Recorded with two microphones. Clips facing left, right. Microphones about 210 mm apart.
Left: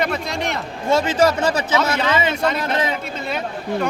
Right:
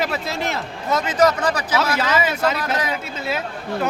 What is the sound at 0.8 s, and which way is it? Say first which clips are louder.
Speech: left 2 dB; 30° left (ahead or behind).